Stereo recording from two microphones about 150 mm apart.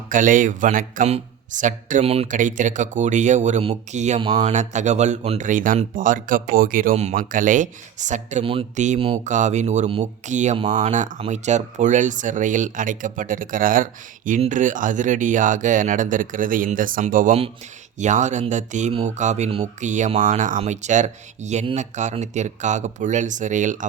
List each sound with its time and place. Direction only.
0.1 s speech: 60° right (ahead or behind); by 2.2 s 45° right (ahead or behind)
2.2 s speech: 60° right (ahead or behind)
4.2 s speech: 35° right (ahead or behind)
5.5 s speech: 60° right (ahead or behind)
6.9 s speech: 50° right (ahead or behind)